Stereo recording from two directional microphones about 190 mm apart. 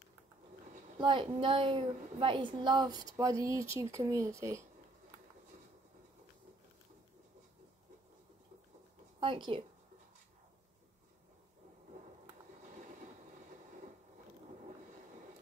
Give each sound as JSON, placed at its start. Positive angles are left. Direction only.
{"t": 0.9, "sound": "a woman's voice", "side_deg": -25}
{"t": 9.2, "sound": "speech", "side_deg": -25}